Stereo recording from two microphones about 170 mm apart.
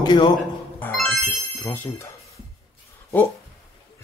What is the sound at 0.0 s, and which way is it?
Speech, 25° left (ahead or behind).